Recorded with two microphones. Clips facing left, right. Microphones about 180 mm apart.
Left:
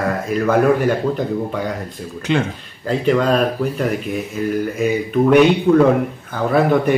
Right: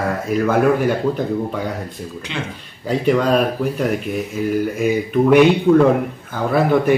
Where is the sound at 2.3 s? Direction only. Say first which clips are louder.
Left 10 dB; 50° left (ahead or behind).